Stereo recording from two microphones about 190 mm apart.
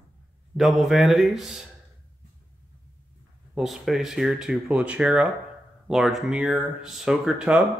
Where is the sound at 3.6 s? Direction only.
Centre (ahead or behind).